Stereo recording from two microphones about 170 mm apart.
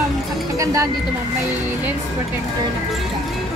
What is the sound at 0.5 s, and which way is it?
Speech, 20° right (ahead or behind).